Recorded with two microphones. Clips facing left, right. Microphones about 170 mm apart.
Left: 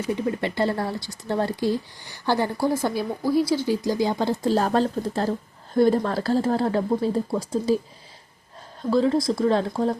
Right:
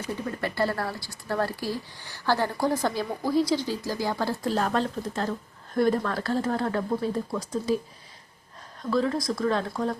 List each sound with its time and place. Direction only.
0.3 s speech: 20° left (ahead or behind)
4.5 s speech: 35° left (ahead or behind)
8.8 s speech: 30° left (ahead or behind)